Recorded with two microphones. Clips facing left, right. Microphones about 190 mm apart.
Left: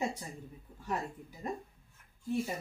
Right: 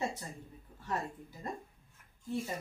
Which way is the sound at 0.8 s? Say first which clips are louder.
Left 1 dB; 15° left (ahead or behind).